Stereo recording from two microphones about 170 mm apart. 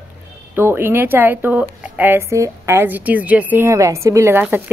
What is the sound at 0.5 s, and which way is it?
A woman's voice, 10° right (ahead or behind).